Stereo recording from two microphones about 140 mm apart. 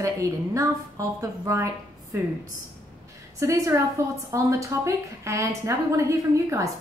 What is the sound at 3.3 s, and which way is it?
A woman's voice, 20° right (ahead or behind).